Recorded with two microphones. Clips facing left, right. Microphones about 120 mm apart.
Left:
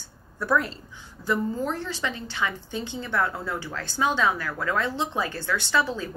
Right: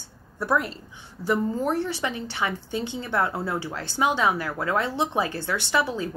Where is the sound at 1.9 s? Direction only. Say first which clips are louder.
Right 3 dB; 20° right (ahead or behind).